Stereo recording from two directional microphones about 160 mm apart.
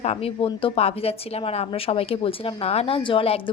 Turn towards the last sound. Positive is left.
turn(degrees=35)  # may be behind; listen again after turning